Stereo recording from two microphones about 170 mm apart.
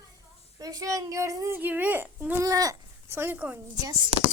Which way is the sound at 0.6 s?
20° right (ahead or behind).